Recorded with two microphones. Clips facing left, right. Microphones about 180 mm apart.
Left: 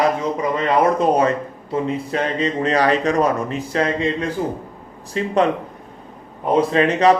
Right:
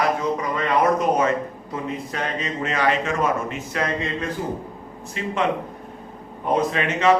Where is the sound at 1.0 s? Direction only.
35° left (ahead or behind).